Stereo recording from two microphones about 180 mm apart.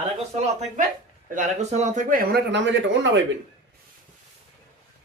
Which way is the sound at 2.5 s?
85° right.